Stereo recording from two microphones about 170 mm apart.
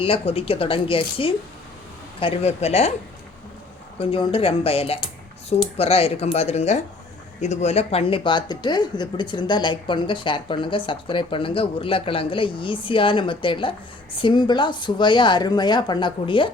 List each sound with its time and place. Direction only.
0.0 s speech: 35° left (ahead or behind)
3.9 s speech: 35° left (ahead or behind)